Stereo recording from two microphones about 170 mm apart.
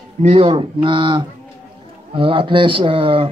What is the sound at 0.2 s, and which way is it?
Speech, 35° right (ahead or behind).